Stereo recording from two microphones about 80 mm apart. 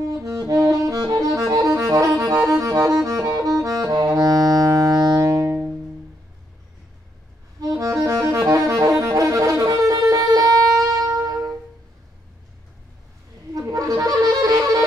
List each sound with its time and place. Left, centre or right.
0.0 s music: right
2.7 s saxophone: right
7.6 s music: right
13.5 s wind instrument: right